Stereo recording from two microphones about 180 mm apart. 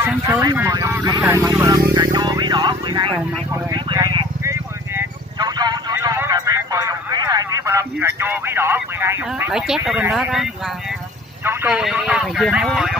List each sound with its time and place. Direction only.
0.0 s speech: 15° right (ahead or behind)
2.1 s music: 25° right (ahead or behind)
3.7 s vehicle: 25° right (ahead or behind)
9.5 s speech: 5° right (ahead or behind)